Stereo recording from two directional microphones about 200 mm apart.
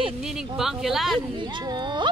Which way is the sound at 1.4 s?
25° right (ahead or behind).